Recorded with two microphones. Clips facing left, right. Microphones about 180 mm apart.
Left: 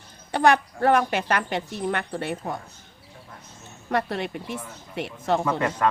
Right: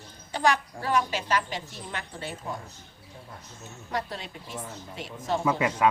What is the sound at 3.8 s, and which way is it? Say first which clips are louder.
A woman's voice: left 8 dB; 65° left (ahead or behind).